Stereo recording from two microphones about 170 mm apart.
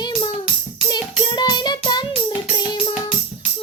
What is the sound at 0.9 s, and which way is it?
Music, 25° left (ahead or behind).